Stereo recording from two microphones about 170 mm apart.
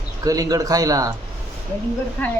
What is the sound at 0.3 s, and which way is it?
Speech, 20° right (ahead or behind).